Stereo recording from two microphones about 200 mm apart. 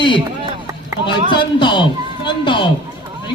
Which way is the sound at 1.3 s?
25° left (ahead or behind).